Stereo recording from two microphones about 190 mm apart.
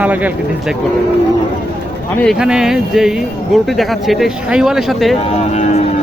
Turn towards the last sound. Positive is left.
turn(degrees=35)  # may be behind; listen again after turning